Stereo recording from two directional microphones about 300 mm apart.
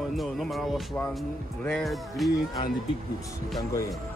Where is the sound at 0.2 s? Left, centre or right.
Centre.